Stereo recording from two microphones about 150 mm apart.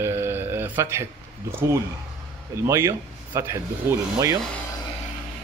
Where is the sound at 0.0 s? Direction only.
15° right (ahead or behind).